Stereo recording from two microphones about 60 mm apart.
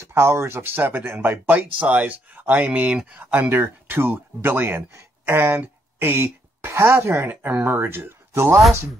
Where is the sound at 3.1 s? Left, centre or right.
Right.